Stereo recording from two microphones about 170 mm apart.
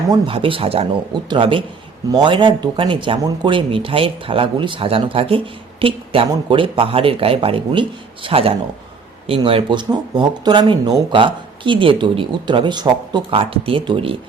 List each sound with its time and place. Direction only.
0.1 s speech: 30° right (ahead or behind)